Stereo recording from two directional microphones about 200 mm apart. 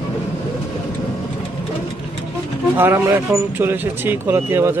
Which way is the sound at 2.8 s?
10° right (ahead or behind).